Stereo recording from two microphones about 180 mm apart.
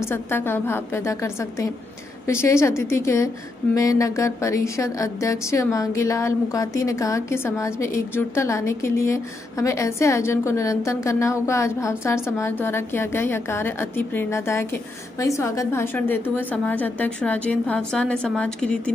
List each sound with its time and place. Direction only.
0.0 s a woman's voice: 15° left (ahead or behind)